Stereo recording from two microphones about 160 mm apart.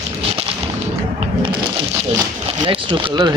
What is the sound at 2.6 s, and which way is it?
Speech, 25° right (ahead or behind).